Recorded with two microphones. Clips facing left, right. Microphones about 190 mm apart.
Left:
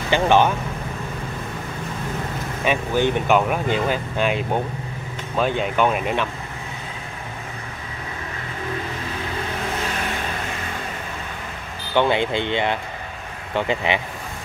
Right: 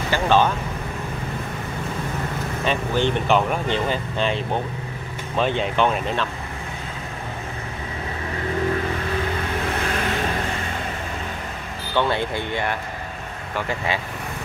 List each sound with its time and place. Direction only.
0.1 s speech: 15° left (ahead or behind)
2.6 s speech: 10° left (ahead or behind)
11.9 s speech: 20° left (ahead or behind)